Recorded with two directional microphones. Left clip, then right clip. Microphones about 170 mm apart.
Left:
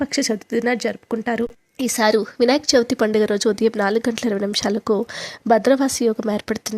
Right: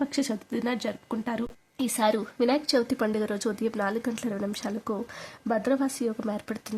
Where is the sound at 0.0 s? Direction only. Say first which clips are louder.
Left 8 dB; 35° left (ahead or behind).